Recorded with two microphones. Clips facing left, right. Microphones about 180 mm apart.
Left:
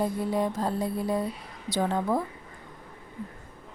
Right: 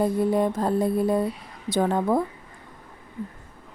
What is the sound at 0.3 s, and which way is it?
Speech, 55° right (ahead or behind).